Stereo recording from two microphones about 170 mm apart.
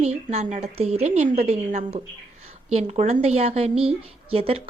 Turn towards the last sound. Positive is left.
turn(degrees=-35)  # may be behind; listen again after turning